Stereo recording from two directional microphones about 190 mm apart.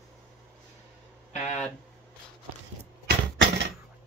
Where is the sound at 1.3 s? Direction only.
35° left (ahead or behind).